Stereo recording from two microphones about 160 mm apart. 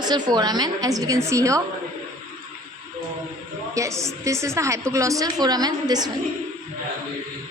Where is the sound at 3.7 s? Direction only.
20° right (ahead or behind).